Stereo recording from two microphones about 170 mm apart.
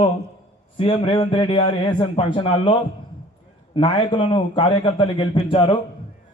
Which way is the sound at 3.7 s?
30° left (ahead or behind).